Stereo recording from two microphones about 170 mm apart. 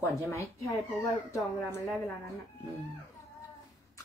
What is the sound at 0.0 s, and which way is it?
Speech, 15° left (ahead or behind).